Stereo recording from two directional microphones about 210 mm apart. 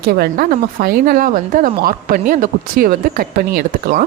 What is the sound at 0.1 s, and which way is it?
Speech, 45° right (ahead or behind).